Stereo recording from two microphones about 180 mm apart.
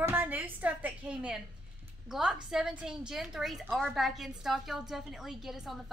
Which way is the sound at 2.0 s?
5° right (ahead or behind).